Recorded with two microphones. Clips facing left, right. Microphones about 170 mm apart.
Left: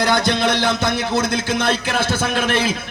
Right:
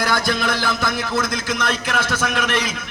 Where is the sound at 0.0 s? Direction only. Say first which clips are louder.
Left 3 dB; 25° left (ahead or behind).